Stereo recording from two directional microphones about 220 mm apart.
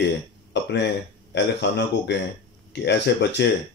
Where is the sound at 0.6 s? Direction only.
50° left (ahead or behind).